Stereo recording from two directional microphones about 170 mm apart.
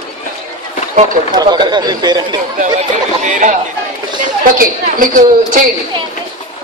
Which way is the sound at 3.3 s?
45° right (ahead or behind).